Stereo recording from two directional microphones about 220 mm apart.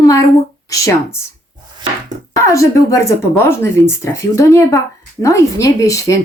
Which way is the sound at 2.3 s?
15° left (ahead or behind).